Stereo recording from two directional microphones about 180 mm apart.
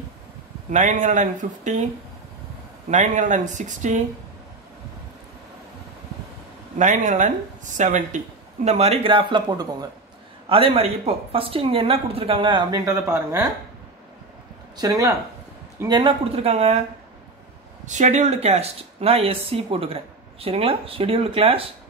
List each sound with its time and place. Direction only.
0.7 s speech: 40° right (ahead or behind)
2.9 s speech: 45° right (ahead or behind)
6.8 s speech: 45° right (ahead or behind); by 13.5 s 20° right (ahead or behind)
14.8 s speech: 20° right (ahead or behind); by 16.8 s 35° right (ahead or behind)
17.8 s speech: 40° right (ahead or behind)